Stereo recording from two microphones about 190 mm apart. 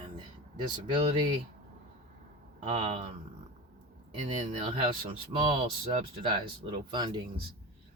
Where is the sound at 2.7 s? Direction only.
30° right (ahead or behind).